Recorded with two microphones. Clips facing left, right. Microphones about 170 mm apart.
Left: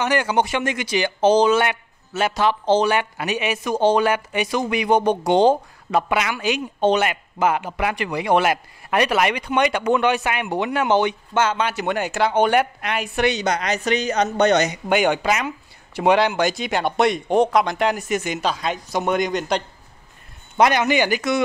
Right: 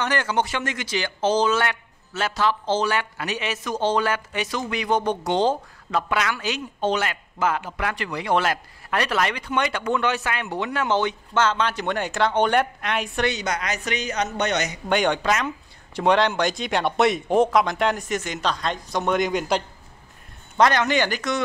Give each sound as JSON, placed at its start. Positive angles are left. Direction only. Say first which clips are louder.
{"t": 0.0, "sound": "a man's voice", "louder": "left 4 dB", "side_deg": 15}
{"t": 13.3, "sound": "speech", "louder": "left 5 dB", "side_deg": 30}
{"t": 14.9, "sound": "speech", "louder": "even", "side_deg": 5}
{"t": 20.5, "sound": "a man's voice", "louder": "left 2 dB", "side_deg": 10}